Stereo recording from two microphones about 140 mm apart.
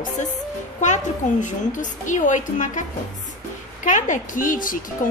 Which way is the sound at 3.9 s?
65° left (ahead or behind).